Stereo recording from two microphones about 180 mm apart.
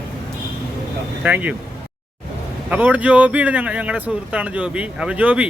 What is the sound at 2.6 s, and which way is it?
Speech, 10° right (ahead or behind).